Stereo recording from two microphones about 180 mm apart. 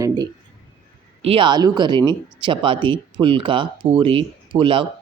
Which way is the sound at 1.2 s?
30° right (ahead or behind).